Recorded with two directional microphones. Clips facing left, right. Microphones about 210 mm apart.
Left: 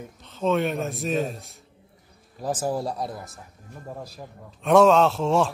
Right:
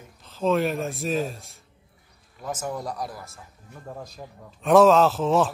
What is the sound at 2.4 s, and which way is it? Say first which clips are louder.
Speech: left 4 dB; 30° left (ahead or behind).